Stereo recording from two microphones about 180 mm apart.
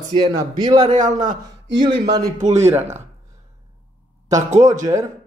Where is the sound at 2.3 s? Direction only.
40° right (ahead or behind).